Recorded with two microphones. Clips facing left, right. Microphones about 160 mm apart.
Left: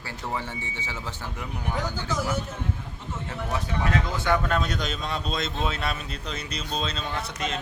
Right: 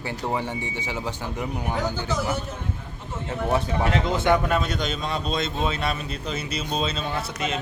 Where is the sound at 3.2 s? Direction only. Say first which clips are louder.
Right 7 dB; 25° right (ahead or behind).